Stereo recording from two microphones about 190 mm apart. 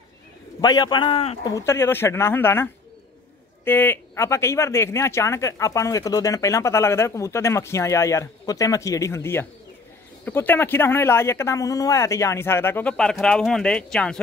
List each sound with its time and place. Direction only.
0.6 s a man's voice: 20° left (ahead or behind)
1.5 s speech: 15° left (ahead or behind)